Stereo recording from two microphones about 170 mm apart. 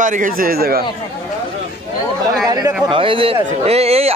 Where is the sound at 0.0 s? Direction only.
50° right (ahead or behind).